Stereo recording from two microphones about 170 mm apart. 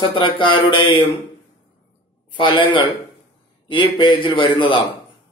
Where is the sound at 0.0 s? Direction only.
30° left (ahead or behind).